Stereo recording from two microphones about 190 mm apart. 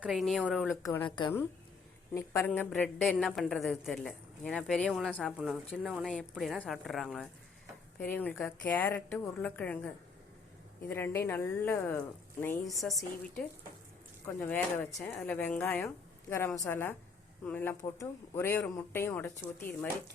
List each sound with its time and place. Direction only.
0.0 s a woman's voice: centre (ahead or behind)
1.2 s speech: 25° left (ahead or behind)
2.1 s a woman's voice: 10° left (ahead or behind)